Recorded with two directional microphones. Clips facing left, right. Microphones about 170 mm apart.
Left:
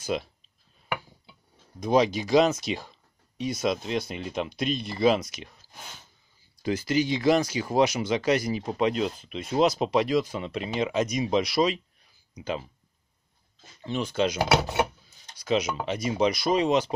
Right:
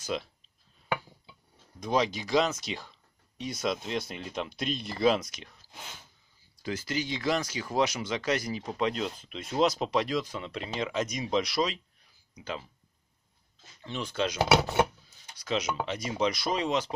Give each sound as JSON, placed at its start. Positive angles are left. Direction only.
{"t": 0.1, "sound": "speech", "side_deg": 10}
{"t": 1.8, "sound": "speech", "side_deg": 10}
{"t": 6.6, "sound": "speech", "side_deg": 15}
{"t": 13.8, "sound": "speech", "side_deg": 10}
{"t": 15.3, "sound": "a sound", "side_deg": 10}
{"t": 15.8, "sound": "speech", "side_deg": 10}